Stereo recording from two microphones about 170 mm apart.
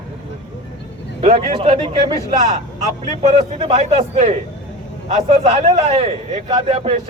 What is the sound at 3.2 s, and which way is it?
A man's voice, 45° right (ahead or behind).